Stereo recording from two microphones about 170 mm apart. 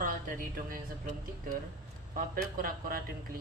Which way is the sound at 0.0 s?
55° right (ahead or behind).